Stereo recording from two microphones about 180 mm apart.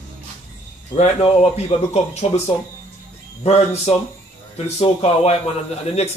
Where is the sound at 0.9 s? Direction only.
35° left (ahead or behind).